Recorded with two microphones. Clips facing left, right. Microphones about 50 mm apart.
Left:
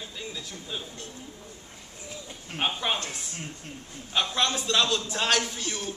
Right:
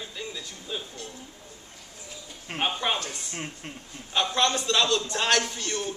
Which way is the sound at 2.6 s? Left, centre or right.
Centre.